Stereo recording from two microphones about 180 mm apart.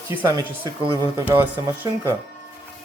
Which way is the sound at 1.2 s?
10° right (ahead or behind).